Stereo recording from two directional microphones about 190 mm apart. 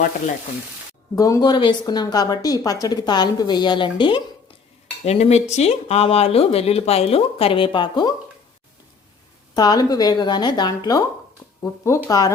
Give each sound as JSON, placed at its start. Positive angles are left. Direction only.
{"t": 1.1, "sound": "speech", "side_deg": 15}
{"t": 9.6, "sound": "speech", "side_deg": 20}